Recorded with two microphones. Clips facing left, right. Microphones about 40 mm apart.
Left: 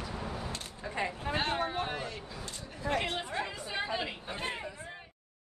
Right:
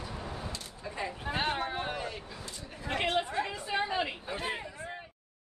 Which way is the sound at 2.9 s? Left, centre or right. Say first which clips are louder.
Right 1 dB; right.